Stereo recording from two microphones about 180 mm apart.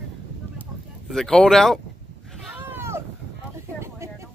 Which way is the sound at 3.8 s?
15° right (ahead or behind).